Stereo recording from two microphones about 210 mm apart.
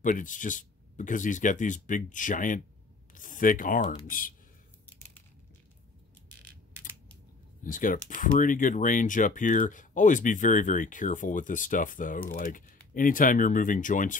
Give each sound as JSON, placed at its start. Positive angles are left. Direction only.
{"t": 0.0, "sound": "speech", "side_deg": 40}
{"t": 7.6, "sound": "speech", "side_deg": 40}